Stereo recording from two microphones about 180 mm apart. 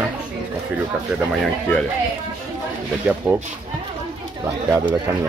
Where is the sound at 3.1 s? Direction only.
10° right (ahead or behind).